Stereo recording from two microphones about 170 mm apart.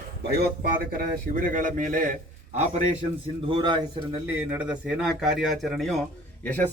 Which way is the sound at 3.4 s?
30° right (ahead or behind).